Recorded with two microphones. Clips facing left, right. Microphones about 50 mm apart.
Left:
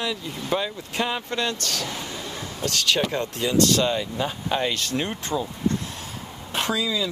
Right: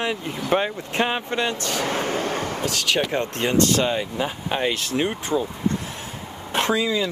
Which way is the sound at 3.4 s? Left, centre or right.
Right.